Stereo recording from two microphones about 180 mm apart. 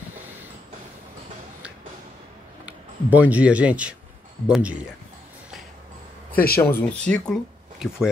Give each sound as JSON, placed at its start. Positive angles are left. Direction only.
{"t": 2.6, "sound": "speech", "side_deg": -10}
{"t": 6.3, "sound": "speech", "side_deg": 55}
{"t": 6.6, "sound": "speech", "side_deg": 10}